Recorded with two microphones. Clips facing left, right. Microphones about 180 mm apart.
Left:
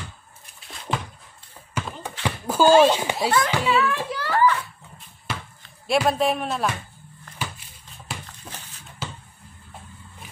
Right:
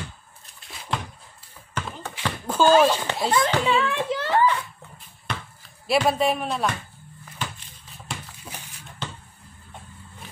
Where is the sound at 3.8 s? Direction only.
25° right (ahead or behind).